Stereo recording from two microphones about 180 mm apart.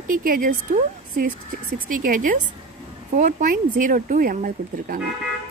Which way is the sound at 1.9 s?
50° right (ahead or behind).